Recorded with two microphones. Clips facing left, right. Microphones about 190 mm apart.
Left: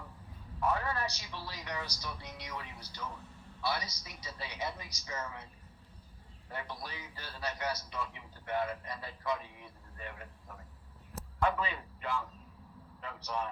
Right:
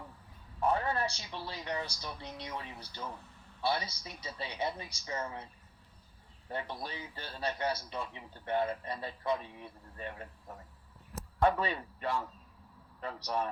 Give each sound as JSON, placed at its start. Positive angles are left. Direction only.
{"t": 0.6, "sound": "a man's voice", "side_deg": -30}
{"t": 6.5, "sound": "a man's voice", "side_deg": -25}